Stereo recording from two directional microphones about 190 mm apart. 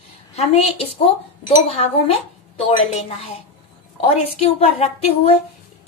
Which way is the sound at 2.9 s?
35° left (ahead or behind).